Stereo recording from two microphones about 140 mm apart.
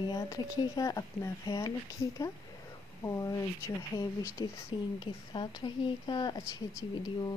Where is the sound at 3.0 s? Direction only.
25° left (ahead or behind).